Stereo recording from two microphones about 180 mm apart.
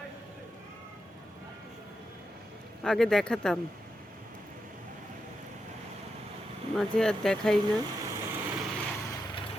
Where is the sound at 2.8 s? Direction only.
5° left (ahead or behind).